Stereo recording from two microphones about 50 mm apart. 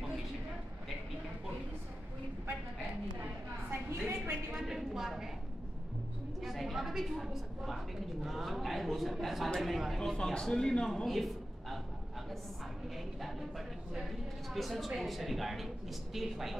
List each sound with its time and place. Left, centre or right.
4.0 s a woman's voice: right
4.6 s a woman's voice: centre
6.4 s a woman's voice: centre
10.1 s a man's voice: centre
11.1 s a sound: centre
14.5 s a woman's voice: centre